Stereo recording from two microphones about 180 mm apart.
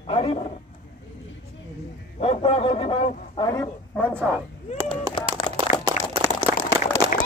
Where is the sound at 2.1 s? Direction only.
30° left (ahead or behind).